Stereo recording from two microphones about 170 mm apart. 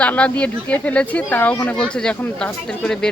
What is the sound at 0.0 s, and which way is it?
Speech, 10° left (ahead or behind).